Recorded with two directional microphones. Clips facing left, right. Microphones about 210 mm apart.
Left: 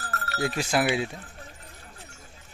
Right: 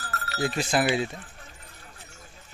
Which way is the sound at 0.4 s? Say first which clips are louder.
Even; 10° left (ahead or behind).